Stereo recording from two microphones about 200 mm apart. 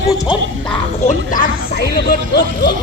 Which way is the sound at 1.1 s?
40° left (ahead or behind).